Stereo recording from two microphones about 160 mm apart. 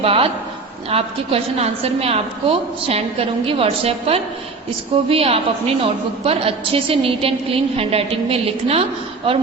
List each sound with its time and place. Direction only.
0.0 s a woman's voice: 35° right (ahead or behind)